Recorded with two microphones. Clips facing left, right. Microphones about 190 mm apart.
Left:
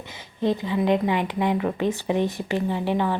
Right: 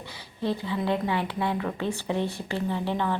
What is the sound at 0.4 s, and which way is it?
A woman's voice, 15° left (ahead or behind).